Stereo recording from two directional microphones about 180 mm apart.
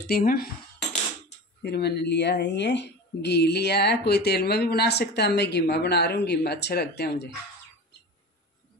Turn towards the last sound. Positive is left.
turn(degrees=65)  # may be behind; listen again after turning